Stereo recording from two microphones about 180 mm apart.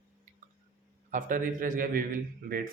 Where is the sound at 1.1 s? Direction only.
50° right (ahead or behind).